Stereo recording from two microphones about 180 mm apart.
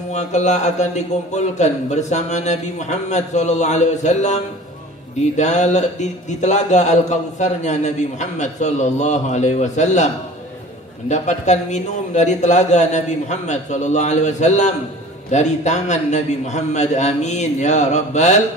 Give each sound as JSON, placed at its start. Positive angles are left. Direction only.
{"t": 0.1, "sound": "a man's voice", "side_deg": 40}
{"t": 5.4, "sound": "a man's voice", "side_deg": 40}
{"t": 11.1, "sound": "a man's voice", "side_deg": 40}